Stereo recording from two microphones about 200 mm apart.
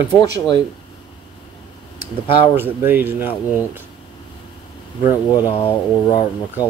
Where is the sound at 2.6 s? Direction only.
10° right (ahead or behind).